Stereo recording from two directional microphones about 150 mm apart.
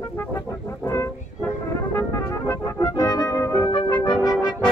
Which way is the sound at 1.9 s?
15° left (ahead or behind).